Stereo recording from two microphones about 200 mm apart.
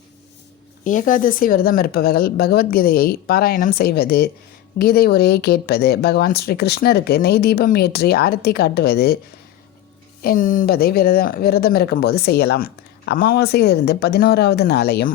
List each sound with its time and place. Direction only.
0.9 s speech: 40° left (ahead or behind)
10.2 s speech: 40° left (ahead or behind)